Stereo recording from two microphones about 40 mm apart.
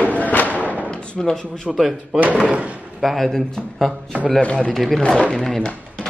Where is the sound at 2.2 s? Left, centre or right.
Right.